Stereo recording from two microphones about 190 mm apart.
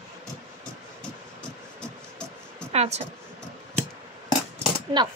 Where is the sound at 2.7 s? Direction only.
35° right (ahead or behind).